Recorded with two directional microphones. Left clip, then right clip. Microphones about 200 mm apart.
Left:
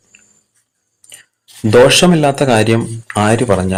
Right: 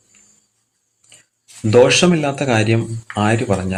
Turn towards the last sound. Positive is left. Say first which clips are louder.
# left 5 dB
turn(degrees=15)  # may be behind; listen again after turning